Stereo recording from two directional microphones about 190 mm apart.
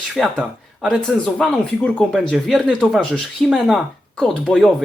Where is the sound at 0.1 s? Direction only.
Centre (ahead or behind).